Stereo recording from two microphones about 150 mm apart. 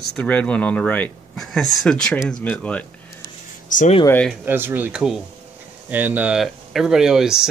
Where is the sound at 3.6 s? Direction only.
60° left (ahead or behind).